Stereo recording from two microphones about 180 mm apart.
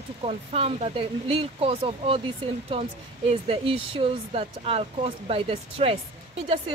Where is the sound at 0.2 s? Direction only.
35° right (ahead or behind).